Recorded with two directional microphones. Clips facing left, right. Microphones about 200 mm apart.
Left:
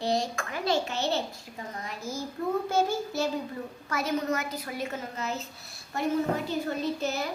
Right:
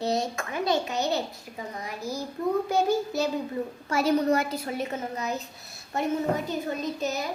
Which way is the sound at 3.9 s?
35° right (ahead or behind).